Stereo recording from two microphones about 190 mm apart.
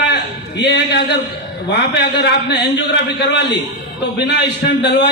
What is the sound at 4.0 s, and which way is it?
A man's voice, 65° left (ahead or behind).